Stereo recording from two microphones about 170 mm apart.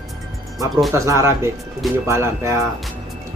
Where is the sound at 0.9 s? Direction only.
15° right (ahead or behind).